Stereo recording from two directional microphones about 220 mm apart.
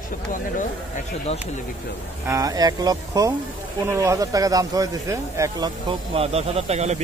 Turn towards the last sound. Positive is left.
turn(degrees=-30)  # may be behind; listen again after turning